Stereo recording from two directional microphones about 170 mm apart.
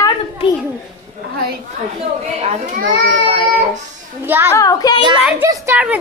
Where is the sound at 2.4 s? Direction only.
50° right (ahead or behind).